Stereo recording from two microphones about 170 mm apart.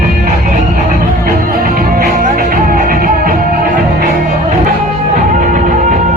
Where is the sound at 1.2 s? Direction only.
60° right (ahead or behind).